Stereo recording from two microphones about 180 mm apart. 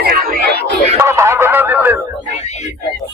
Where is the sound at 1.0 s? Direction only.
15° right (ahead or behind).